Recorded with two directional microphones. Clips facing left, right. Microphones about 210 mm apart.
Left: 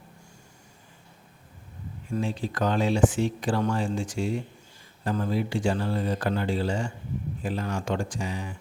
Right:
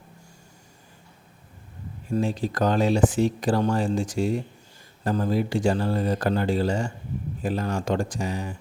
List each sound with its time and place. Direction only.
2.0 s speech: 40° right (ahead or behind)